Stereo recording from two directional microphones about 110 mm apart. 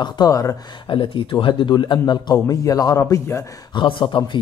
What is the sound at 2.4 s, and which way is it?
Speech, 30° left (ahead or behind).